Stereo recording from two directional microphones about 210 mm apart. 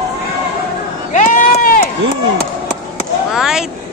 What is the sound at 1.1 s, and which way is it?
Run, 35° left (ahead or behind).